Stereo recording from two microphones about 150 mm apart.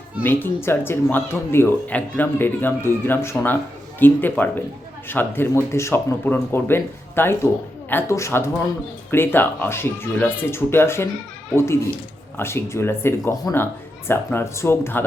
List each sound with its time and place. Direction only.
0.2 s speech: 15° left (ahead or behind)